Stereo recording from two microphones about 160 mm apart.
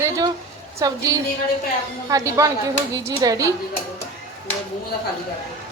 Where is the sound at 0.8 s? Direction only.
20° right (ahead or behind).